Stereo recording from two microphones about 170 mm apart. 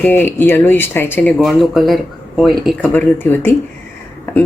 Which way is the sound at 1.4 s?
Centre (ahead or behind).